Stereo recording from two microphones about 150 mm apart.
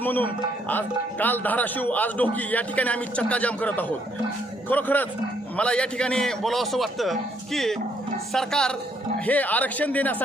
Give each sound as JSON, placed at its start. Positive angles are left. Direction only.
{"t": 0.0, "sound": "a man's voice", "side_deg": 10}